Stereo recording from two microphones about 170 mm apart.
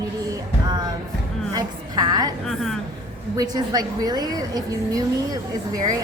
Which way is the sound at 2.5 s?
Centre (ahead or behind).